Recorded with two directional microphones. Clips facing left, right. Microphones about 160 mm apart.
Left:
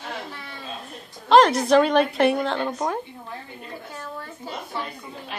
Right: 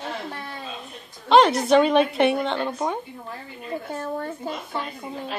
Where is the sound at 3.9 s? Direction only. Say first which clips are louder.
Right 8 dB; 45° right (ahead or behind).